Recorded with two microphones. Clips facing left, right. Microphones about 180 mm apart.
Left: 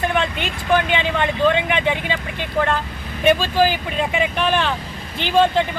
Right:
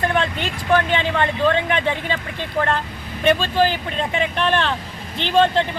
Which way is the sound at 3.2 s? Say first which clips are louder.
Left 1 dB; 5° left (ahead or behind).